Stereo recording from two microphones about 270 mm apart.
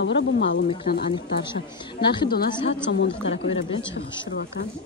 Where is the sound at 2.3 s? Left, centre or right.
Left.